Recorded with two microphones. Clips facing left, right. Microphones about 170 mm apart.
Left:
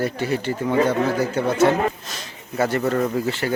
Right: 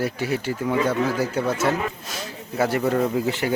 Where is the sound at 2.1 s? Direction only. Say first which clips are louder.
Right 3 dB; 10° right (ahead or behind).